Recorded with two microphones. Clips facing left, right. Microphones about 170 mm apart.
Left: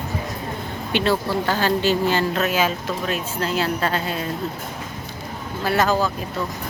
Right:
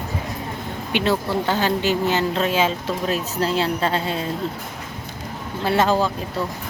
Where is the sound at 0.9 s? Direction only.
20° right (ahead or behind).